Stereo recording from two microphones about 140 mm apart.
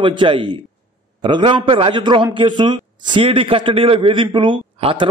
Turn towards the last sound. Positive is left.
turn(degrees=-35)  # may be behind; listen again after turning